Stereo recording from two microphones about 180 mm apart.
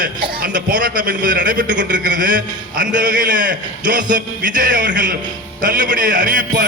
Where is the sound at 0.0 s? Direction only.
50° right (ahead or behind).